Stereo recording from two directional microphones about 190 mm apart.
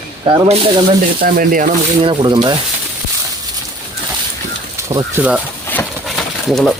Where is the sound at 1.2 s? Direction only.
45° right (ahead or behind).